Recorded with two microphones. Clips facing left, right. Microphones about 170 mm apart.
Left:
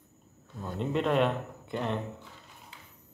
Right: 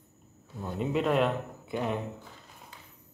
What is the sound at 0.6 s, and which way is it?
A man's voice, 5° right (ahead or behind).